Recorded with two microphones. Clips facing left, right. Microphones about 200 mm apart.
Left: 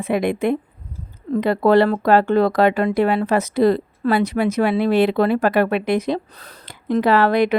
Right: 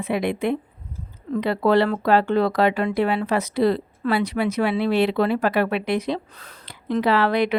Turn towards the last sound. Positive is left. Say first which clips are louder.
# left 4 dB
turn(degrees=45)  # may be behind; listen again after turning